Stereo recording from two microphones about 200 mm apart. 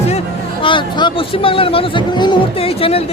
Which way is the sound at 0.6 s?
25° left (ahead or behind).